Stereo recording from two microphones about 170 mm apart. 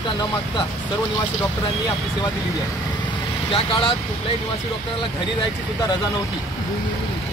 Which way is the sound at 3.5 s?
30° left (ahead or behind).